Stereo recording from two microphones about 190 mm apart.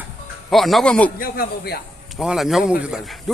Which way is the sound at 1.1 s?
50° left (ahead or behind).